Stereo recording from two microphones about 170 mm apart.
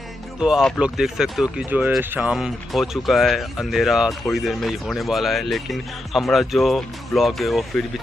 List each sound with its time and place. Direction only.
0.4 s speech: centre (ahead or behind)